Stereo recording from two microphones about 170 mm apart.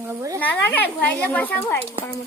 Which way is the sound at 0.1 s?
20° right (ahead or behind).